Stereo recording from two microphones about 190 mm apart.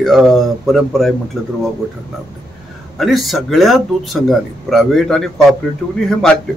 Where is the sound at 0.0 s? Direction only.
Centre (ahead or behind).